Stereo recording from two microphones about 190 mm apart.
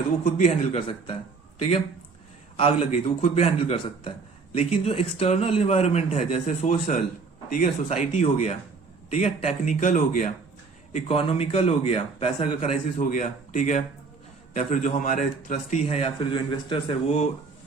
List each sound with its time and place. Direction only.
0.3 s a man's voice: 40° left (ahead or behind)
2.6 s a man's voice: 30° left (ahead or behind)
10.9 s a man's voice: 30° left (ahead or behind)